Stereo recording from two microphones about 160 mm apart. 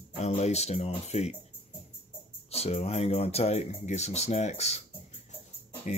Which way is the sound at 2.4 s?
40° left (ahead or behind).